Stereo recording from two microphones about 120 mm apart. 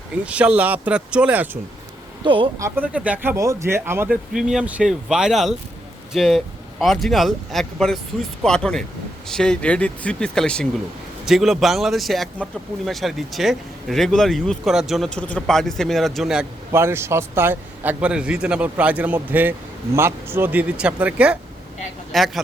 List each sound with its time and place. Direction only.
0.3 s a man's voice: 10° right (ahead or behind)
2.2 s speech: 45° right (ahead or behind)
2.6 s speech: 25° right (ahead or behind)
2.8 s speech: 10° right (ahead or behind)
4.3 s speech: 5° right (ahead or behind)
16.7 s a man's voice: 20° right (ahead or behind)
22.1 s speech: centre (ahead or behind)